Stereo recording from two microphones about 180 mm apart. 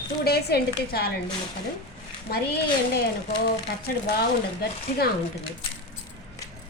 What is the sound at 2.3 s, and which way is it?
Speech, 60° left (ahead or behind).